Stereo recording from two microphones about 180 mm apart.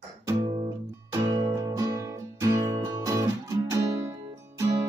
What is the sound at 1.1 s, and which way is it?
Music, 20° right (ahead or behind).